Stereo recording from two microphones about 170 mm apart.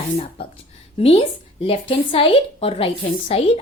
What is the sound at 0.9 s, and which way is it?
A woman's voice, 35° left (ahead or behind).